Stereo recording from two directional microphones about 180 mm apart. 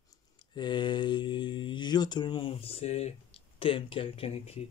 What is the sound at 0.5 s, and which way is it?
Speech, 25° left (ahead or behind).